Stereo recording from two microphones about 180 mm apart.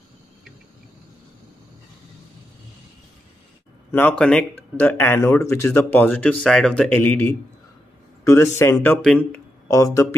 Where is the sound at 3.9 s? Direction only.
10° left (ahead or behind).